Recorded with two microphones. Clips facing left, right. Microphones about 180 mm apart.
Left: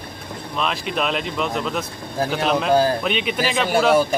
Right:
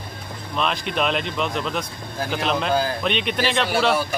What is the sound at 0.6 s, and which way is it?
Speech, centre (ahead or behind).